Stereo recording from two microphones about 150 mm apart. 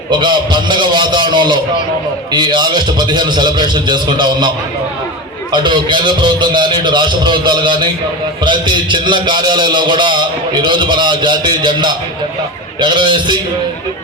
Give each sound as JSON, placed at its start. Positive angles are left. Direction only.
{"t": 0.1, "sound": "a man's voice", "side_deg": -30}